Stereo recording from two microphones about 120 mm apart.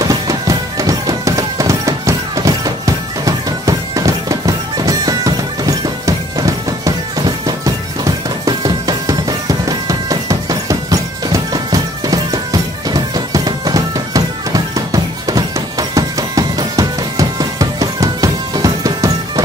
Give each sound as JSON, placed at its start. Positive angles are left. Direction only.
{"t": 0.0, "sound": "music", "side_deg": -30}